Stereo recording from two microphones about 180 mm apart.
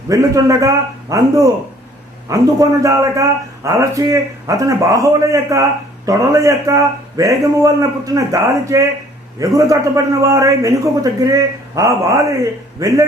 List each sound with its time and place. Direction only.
0.1 s a man's voice: 20° right (ahead or behind)